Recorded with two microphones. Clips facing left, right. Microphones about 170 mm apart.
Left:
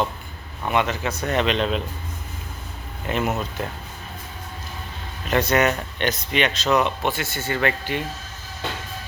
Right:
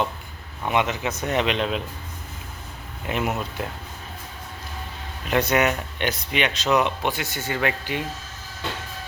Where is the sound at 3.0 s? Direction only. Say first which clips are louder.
Left 2 dB; 10° right (ahead or behind).